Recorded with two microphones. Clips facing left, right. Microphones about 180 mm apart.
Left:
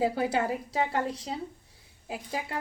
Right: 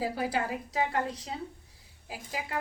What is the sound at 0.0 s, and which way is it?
Speech, 25° left (ahead or behind).